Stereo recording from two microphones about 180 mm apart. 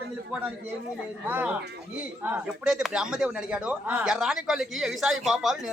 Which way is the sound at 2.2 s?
10° right (ahead or behind).